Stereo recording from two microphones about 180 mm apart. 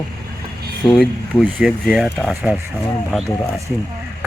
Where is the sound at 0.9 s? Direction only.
Centre (ahead or behind).